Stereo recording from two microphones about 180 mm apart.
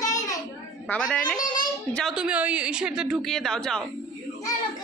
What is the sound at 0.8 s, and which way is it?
Speech, 5° left (ahead or behind).